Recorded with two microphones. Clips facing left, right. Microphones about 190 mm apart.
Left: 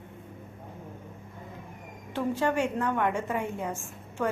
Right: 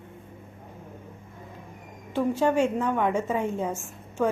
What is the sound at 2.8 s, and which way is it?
Speech, 15° right (ahead or behind).